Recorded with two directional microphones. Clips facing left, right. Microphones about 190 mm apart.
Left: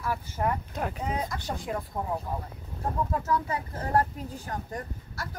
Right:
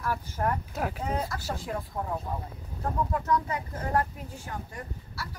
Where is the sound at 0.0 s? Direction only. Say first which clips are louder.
Even; 10° left (ahead or behind).